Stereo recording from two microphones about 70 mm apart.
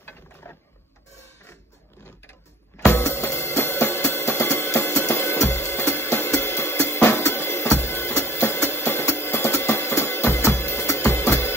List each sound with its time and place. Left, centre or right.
0.0 s mechanisms: left
2.9 s music: left